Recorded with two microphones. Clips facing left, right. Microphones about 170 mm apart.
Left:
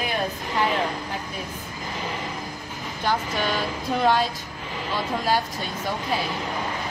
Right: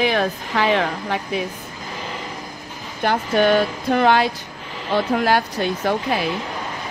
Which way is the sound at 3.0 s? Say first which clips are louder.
Right 7 dB; 60° right (ahead or behind).